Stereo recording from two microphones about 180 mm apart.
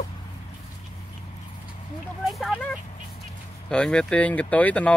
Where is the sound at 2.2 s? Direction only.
Centre (ahead or behind).